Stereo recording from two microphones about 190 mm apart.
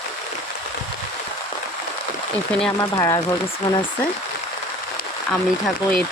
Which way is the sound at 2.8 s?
20° left (ahead or behind).